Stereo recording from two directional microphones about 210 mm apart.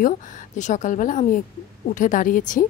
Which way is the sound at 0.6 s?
35° left (ahead or behind).